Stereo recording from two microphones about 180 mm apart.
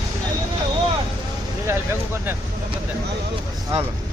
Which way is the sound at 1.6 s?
15° right (ahead or behind).